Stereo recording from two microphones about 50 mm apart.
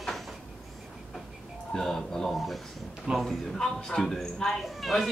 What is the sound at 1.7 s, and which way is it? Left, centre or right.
Speech, centre.